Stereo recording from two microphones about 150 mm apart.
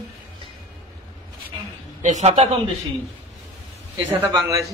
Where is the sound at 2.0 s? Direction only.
50° right (ahead or behind).